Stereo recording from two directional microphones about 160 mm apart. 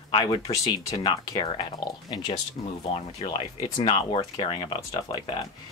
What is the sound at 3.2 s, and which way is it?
Speech, 30° left (ahead or behind).